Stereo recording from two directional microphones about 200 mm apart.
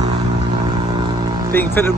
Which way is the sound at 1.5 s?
10° left (ahead or behind).